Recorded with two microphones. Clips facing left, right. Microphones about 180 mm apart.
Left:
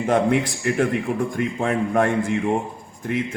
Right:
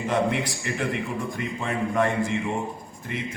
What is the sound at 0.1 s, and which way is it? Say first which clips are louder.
A man's voice: left 5 dB; 50° left (ahead or behind).